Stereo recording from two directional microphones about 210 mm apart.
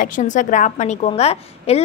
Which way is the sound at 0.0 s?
35° left (ahead or behind).